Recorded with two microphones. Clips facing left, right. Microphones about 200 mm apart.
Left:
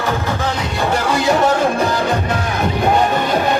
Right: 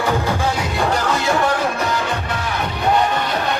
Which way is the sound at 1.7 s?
35° left (ahead or behind).